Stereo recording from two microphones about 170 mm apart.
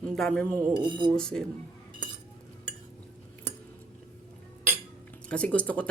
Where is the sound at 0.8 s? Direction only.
30° right (ahead or behind).